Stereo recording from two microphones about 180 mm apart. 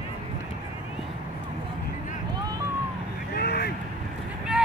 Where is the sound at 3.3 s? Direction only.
60° left (ahead or behind).